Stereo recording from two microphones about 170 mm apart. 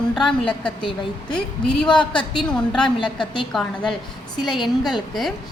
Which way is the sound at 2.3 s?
5° left (ahead or behind).